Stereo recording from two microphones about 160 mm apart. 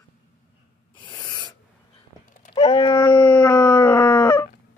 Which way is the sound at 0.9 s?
30° left (ahead or behind).